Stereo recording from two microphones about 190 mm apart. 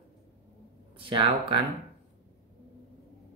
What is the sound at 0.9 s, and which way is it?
Speech, 30° right (ahead or behind).